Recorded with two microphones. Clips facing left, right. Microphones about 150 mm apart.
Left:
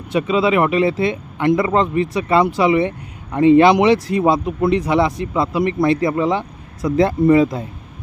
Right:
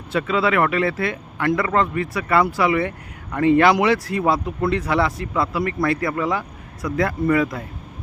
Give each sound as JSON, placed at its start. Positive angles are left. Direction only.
{"t": 0.1, "sound": "speech", "side_deg": 15}